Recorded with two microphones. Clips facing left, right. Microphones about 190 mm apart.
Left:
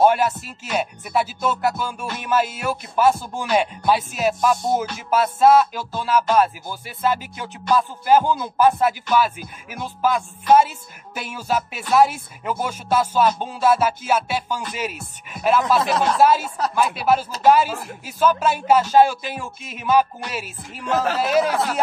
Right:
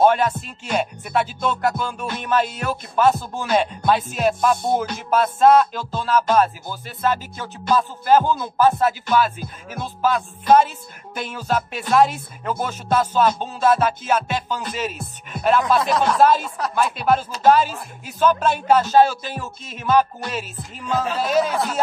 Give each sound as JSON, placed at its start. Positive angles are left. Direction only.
{"t": 0.0, "sound": "music", "side_deg": 10}
{"t": 20.8, "sound": "speech", "side_deg": 75}
{"t": 21.2, "sound": "music", "side_deg": 10}